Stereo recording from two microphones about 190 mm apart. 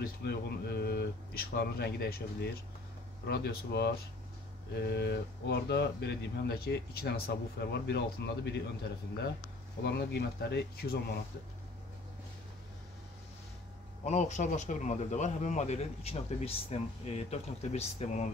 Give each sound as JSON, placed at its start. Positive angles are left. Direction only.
{"t": 0.0, "sound": "speech", "side_deg": 55}
{"t": 9.8, "sound": "speech", "side_deg": 60}
{"t": 14.0, "sound": "speech", "side_deg": 40}